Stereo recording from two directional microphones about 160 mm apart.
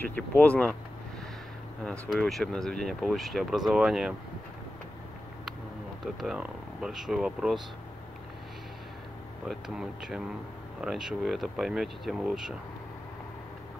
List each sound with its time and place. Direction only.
0.0 s speech: 10° left (ahead or behind)
1.8 s speech: 5° left (ahead or behind)
6.1 s speech: 5° right (ahead or behind)
9.5 s speech: centre (ahead or behind)